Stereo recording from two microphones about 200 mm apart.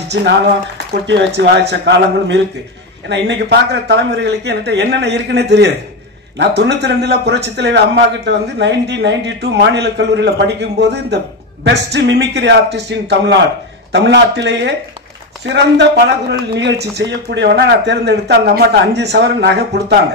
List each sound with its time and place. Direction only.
1.0 s a man's voice: 60° right (ahead or behind)